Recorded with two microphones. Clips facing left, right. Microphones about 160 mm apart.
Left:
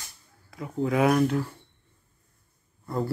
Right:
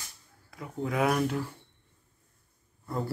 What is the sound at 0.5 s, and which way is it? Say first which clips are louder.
Speech: left 6 dB; centre (ahead or behind).